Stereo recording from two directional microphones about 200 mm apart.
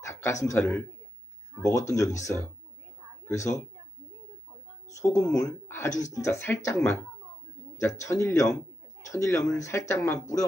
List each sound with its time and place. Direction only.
0.0 s a man's voice: 15° left (ahead or behind)
4.8 s speech: 15° left (ahead or behind)